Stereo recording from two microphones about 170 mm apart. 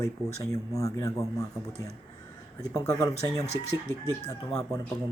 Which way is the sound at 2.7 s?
20° left (ahead or behind).